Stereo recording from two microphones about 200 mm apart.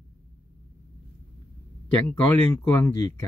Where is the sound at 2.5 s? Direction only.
10° left (ahead or behind).